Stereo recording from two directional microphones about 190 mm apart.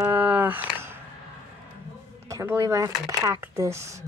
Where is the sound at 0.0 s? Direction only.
10° right (ahead or behind).